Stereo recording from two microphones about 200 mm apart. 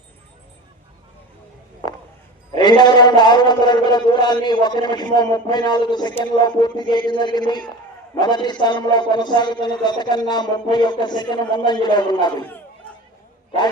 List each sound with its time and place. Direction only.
2.6 s a man's voice: 20° left (ahead or behind)